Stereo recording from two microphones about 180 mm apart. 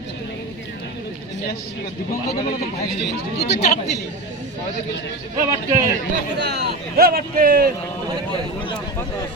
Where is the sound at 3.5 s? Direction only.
40° left (ahead or behind).